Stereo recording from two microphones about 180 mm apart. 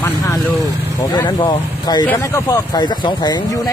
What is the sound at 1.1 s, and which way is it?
Speech, 25° left (ahead or behind).